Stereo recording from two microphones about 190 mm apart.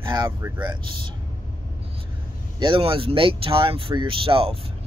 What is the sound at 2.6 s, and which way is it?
Speech, 25° right (ahead or behind).